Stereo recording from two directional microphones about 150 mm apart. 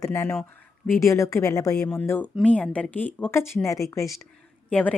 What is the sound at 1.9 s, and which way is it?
Speech, 10° left (ahead or behind).